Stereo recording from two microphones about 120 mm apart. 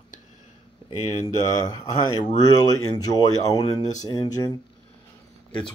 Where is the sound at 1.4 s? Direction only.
25° left (ahead or behind).